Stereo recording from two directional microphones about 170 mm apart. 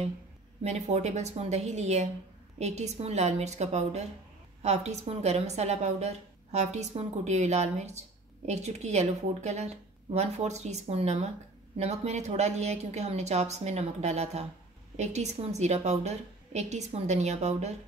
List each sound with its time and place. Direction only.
0.7 s a woman's voice: 40° right (ahead or behind)